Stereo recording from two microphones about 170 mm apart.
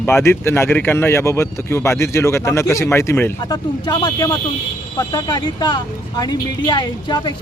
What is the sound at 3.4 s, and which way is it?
Speech, 25° left (ahead or behind).